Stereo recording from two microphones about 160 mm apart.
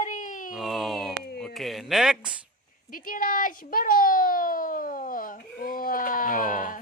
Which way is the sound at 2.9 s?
60° left (ahead or behind).